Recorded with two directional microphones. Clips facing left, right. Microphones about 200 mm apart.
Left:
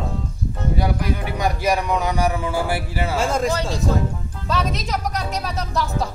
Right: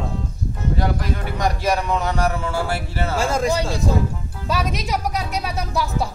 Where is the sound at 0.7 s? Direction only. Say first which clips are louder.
Left 1 dB; 10° left (ahead or behind).